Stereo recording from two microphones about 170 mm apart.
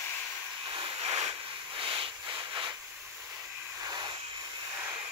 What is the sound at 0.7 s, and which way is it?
Vehicle, 35° right (ahead or behind).